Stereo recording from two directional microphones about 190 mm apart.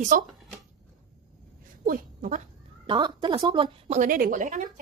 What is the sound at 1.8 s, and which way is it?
Speech, 45° right (ahead or behind).